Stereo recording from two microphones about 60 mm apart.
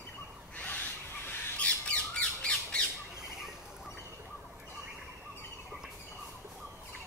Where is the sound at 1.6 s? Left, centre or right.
Centre.